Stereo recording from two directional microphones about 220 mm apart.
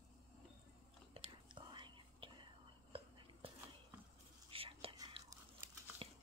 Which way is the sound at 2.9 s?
25° right (ahead or behind).